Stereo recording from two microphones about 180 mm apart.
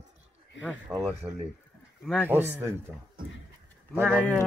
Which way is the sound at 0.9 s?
10° right (ahead or behind).